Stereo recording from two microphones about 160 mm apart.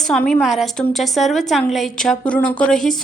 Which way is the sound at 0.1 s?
5° left (ahead or behind).